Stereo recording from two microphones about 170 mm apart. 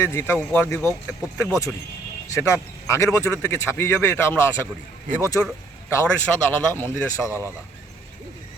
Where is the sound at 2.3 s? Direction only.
15° left (ahead or behind).